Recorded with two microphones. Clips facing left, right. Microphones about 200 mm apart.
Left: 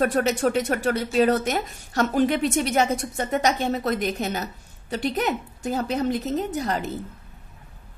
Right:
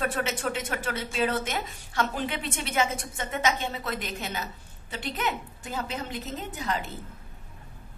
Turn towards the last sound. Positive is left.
turn(degrees=40)  # may be behind; listen again after turning